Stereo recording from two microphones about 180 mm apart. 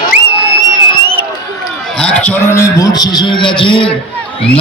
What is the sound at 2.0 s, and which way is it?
A man's voice, 5° left (ahead or behind).